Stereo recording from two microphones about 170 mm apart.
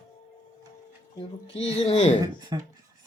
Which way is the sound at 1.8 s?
40° left (ahead or behind).